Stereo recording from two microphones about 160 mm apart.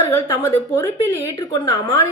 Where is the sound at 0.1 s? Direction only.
15° left (ahead or behind).